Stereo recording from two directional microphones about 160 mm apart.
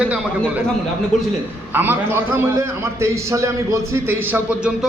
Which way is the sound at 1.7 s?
15° right (ahead or behind).